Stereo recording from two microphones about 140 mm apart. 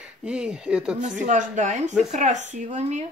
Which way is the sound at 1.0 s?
60° right (ahead or behind).